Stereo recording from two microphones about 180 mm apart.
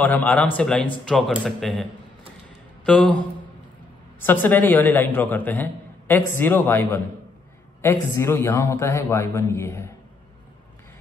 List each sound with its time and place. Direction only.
0.0 s a man's voice: 10° left (ahead or behind)